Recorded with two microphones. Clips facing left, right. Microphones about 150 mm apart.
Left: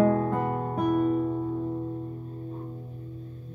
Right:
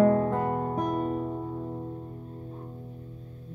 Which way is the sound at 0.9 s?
30° right (ahead or behind).